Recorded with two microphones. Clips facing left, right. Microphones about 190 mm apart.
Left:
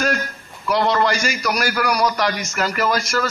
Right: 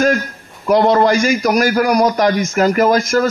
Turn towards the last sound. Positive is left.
turn(degrees=-50)  # may be behind; listen again after turning